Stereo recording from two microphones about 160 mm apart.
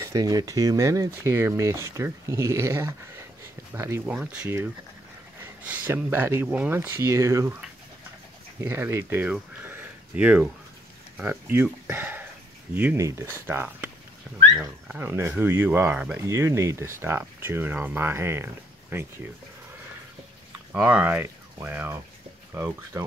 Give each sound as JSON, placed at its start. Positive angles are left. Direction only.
{"t": 0.0, "sound": "speech", "side_deg": -20}
{"t": 5.7, "sound": "speech", "side_deg": -10}
{"t": 8.5, "sound": "speech", "side_deg": -15}
{"t": 16.2, "sound": "speech", "side_deg": -15}
{"t": 20.7, "sound": "speech", "side_deg": -10}